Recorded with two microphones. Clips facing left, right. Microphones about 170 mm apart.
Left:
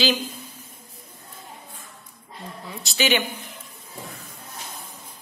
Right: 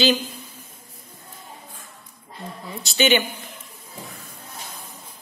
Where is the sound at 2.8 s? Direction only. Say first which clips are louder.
Right 3 dB; centre (ahead or behind).